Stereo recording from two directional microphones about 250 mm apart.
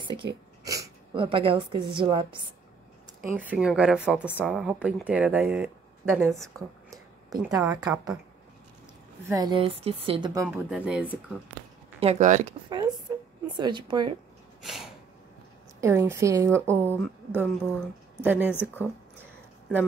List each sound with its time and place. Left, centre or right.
0.7 s a woman's voice: centre
3.2 s speech: centre
9.3 s speech: centre
12.0 s speech: right
12.6 s speech: centre
14.6 s a sound: centre
15.8 s speech: centre
18.5 s a woman's voice: centre